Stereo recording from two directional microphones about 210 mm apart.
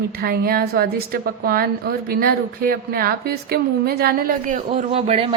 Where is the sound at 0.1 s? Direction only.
45° right (ahead or behind).